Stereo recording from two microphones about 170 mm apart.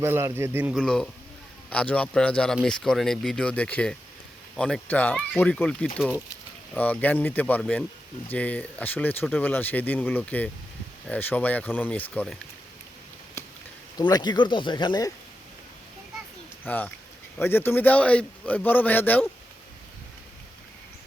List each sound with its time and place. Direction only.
0.0 s a man's voice: 15° right (ahead or behind)
0.8 s speech: 5° left (ahead or behind)
6.7 s speech: 10° left (ahead or behind)
13.9 s speech: 25° left (ahead or behind)
16.6 s speech: 10° left (ahead or behind)